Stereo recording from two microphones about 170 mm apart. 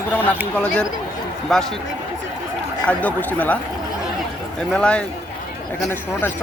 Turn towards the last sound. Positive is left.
turn(degrees=15)  # may be behind; listen again after turning